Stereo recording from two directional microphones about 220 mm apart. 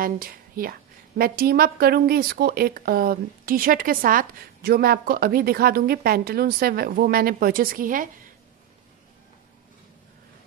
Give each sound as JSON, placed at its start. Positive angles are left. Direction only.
{"t": 0.0, "sound": "a woman's voice", "side_deg": -40}